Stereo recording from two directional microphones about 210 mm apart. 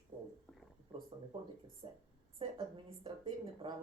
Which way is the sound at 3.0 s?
20° right (ahead or behind).